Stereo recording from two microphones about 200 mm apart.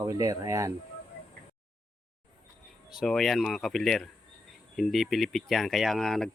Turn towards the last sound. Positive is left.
turn(degrees=0)  # may be behind; listen again after turning